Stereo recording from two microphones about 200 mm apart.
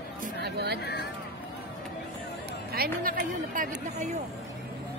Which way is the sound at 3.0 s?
45° right (ahead or behind).